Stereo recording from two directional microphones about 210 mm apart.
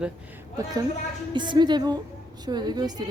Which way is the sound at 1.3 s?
20° right (ahead or behind).